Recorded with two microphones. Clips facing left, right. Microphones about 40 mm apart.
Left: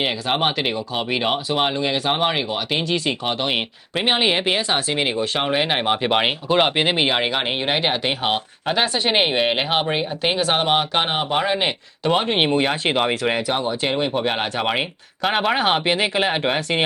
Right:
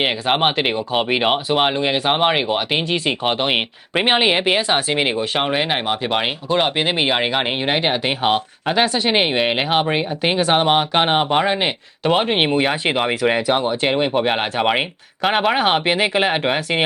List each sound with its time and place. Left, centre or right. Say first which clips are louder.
0.0 s speech: right 3 dB; right; by 5.8 s centre
5.8 s speech: left 1 dB; centre
11.0 s speech: right 5 dB; centre
11.3 s speech: right 2 dB; centre